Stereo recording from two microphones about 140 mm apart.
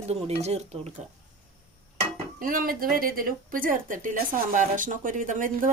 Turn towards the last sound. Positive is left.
turn(degrees=-70)  # may be behind; listen again after turning